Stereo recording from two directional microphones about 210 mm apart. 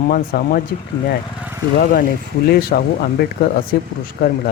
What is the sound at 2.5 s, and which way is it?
Speech, 45° left (ahead or behind).